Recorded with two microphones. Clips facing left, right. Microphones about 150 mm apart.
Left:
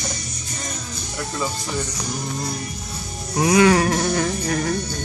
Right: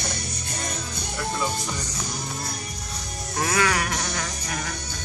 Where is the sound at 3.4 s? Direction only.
20° left (ahead or behind).